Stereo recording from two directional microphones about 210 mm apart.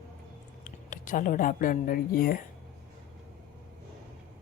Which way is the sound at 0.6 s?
40° left (ahead or behind).